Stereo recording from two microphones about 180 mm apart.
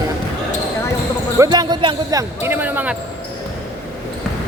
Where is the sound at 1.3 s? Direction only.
20° right (ahead or behind).